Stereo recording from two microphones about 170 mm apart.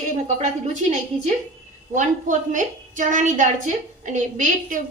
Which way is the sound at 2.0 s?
50° right (ahead or behind).